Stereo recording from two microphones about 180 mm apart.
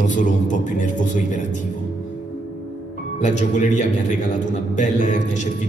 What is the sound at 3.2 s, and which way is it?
A man's voice, 40° left (ahead or behind).